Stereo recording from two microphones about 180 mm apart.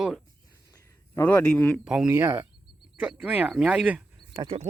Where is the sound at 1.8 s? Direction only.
5° right (ahead or behind).